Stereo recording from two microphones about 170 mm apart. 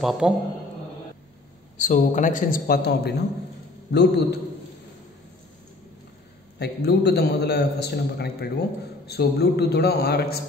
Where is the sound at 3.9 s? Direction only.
80° left.